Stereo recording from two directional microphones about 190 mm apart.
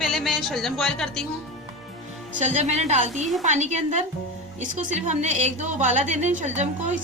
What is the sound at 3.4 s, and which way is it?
A woman's voice, 40° right (ahead or behind).